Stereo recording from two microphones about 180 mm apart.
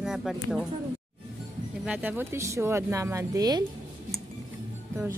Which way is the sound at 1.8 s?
10° right (ahead or behind).